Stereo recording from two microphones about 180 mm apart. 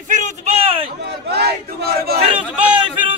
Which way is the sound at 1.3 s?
60° right (ahead or behind).